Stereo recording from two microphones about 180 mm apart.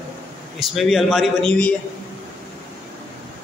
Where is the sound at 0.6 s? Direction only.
Centre (ahead or behind).